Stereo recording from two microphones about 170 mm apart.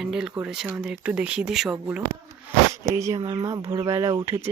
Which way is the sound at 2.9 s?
20° right (ahead or behind).